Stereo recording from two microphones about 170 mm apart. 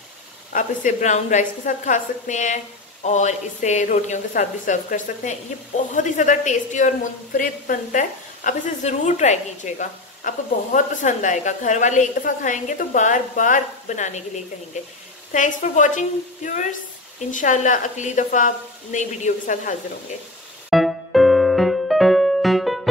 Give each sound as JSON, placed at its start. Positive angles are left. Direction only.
{"t": 0.5, "sound": "a woman's voice", "side_deg": 50}
{"t": 15.3, "sound": "a woman's voice", "side_deg": 45}
{"t": 20.7, "sound": "music", "side_deg": 0}